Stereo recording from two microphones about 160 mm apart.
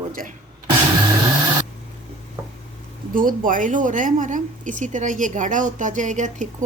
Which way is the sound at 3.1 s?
60° right (ahead or behind).